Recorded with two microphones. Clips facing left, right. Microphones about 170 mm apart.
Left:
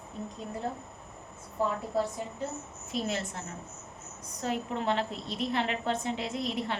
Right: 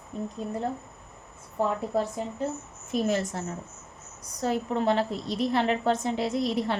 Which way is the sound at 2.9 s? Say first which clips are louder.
Right 7 dB; 45° right (ahead or behind).